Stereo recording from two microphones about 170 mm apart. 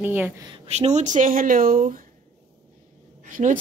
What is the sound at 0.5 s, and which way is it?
Speech, 40° right (ahead or behind).